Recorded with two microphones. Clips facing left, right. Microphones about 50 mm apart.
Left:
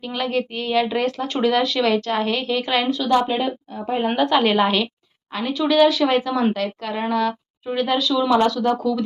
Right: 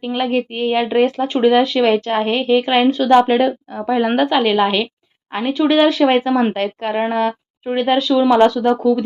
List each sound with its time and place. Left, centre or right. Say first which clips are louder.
0.0 s speech: right 5 dB; right
3.2 s a woman's voice: right 7 dB; right
4.3 s a woman's voice: right 2 dB; centre
5.3 s speech: right 4 dB; right